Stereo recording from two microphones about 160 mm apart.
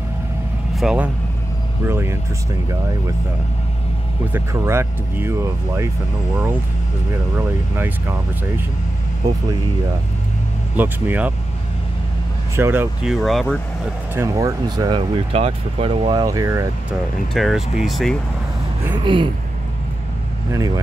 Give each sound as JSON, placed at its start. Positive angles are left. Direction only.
{"t": 0.7, "sound": "speech", "side_deg": -5}
{"t": 4.3, "sound": "speech", "side_deg": -15}
{"t": 7.3, "sound": "speech", "side_deg": -15}
{"t": 10.8, "sound": "speech", "side_deg": -10}
{"t": 12.5, "sound": "speech", "side_deg": -15}
{"t": 13.0, "sound": "speech", "side_deg": 0}
{"t": 14.1, "sound": "speech", "side_deg": -20}
{"t": 15.0, "sound": "speech", "side_deg": -35}
{"t": 17.3, "sound": "speech", "side_deg": 0}
{"t": 19.0, "sound": "speech", "side_deg": -30}
{"t": 20.5, "sound": "speech", "side_deg": -25}